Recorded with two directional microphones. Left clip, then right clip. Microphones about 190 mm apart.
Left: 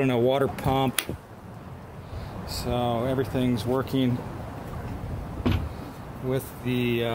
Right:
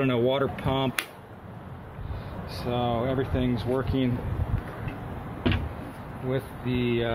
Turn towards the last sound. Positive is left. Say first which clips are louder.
# left 1 dB
turn(degrees=-5)  # may be behind; listen again after turning